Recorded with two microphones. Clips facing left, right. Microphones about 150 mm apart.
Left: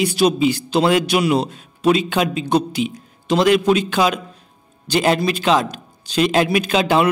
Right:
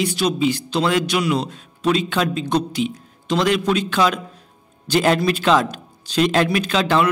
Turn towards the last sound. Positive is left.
turn(degrees=10)  # may be behind; listen again after turning